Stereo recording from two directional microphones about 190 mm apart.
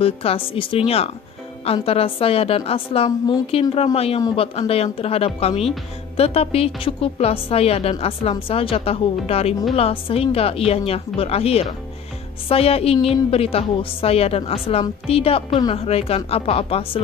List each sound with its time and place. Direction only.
0.0 s a woman's voice: 30° left (ahead or behind)
3.1 s a woman's voice: 20° left (ahead or behind)
3.5 s a woman's voice: 30° left (ahead or behind)